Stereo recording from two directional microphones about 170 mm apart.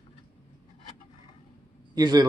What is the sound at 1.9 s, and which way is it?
Speech, 25° right (ahead or behind).